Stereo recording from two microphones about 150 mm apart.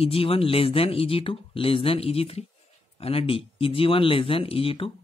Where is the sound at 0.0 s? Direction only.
40° left (ahead or behind).